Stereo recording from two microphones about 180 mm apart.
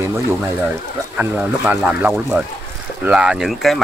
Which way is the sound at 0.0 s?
15° right (ahead or behind).